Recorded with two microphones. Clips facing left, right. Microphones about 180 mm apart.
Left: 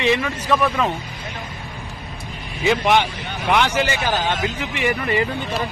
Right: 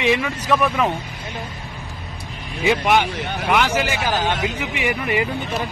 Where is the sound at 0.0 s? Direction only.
10° right (ahead or behind).